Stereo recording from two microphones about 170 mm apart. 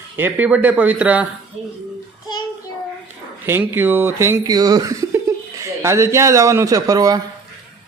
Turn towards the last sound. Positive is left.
turn(degrees=-20)  # may be behind; listen again after turning